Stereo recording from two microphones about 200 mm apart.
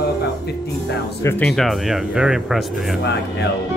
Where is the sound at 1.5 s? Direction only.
Centre (ahead or behind).